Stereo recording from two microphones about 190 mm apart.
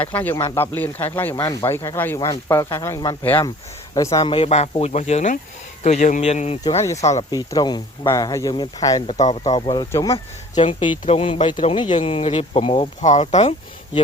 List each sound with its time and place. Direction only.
0.0 s speech: 10° left (ahead or behind); by 7.3 s 35° left (ahead or behind)
7.3 s speech: 20° left (ahead or behind)
9.0 s speech: 35° left (ahead or behind)
9.9 s speech: 15° left (ahead or behind)
10.5 s speech: 30° left (ahead or behind)